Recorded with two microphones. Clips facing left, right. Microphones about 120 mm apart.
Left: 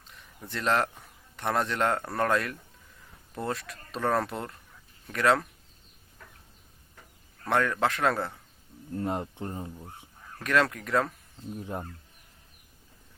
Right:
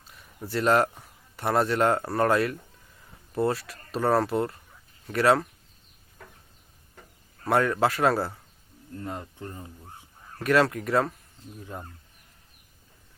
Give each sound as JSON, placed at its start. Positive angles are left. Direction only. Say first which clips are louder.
{"t": 0.1, "sound": "a man's voice", "louder": "right 7 dB", "side_deg": -5}
{"t": 7.4, "sound": "speech", "louder": "right 3 dB", "side_deg": -10}
{"t": 9.2, "sound": "speech", "louder": "left 4 dB", "side_deg": 25}
{"t": 10.4, "sound": "speech", "louder": "right 4 dB", "side_deg": -5}